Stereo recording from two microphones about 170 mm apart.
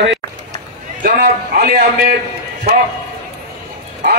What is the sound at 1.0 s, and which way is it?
A man's voice, 60° right (ahead or behind).